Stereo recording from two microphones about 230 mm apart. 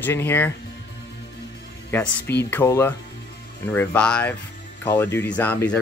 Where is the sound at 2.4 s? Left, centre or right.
Centre.